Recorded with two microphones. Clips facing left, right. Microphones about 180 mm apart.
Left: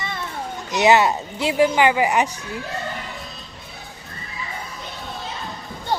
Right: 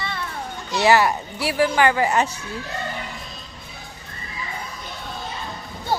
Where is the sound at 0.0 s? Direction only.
20° left (ahead or behind).